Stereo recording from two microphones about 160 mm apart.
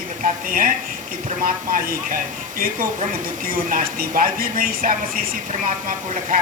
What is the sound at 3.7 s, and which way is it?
A woman's voice, 65° right (ahead or behind).